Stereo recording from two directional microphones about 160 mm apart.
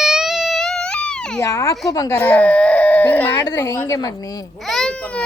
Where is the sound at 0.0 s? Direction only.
5° right (ahead or behind).